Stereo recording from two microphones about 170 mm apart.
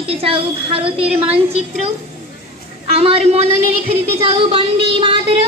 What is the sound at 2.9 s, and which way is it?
A woman's voice, 35° right (ahead or behind).